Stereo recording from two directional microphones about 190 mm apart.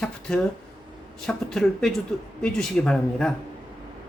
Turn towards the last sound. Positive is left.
turn(degrees=5)  # may be behind; listen again after turning